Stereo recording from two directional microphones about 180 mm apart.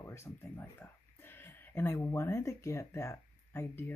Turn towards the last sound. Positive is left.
turn(degrees=15)  # may be behind; listen again after turning